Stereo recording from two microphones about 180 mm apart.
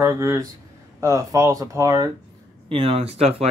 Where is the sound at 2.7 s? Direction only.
30° right (ahead or behind).